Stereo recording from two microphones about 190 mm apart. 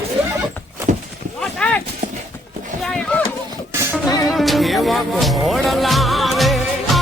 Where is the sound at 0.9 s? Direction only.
40° right (ahead or behind).